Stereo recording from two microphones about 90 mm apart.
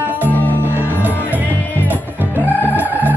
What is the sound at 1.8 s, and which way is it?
Music, 20° right (ahead or behind).